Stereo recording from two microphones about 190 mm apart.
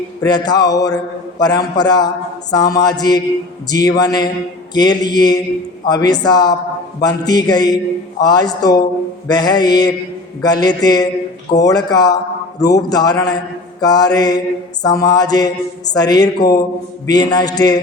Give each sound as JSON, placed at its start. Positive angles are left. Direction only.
{"t": 0.2, "sound": "a man's voice", "side_deg": 20}